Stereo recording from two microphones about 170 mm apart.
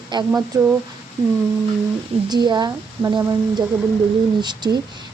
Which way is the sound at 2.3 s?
25° right (ahead or behind).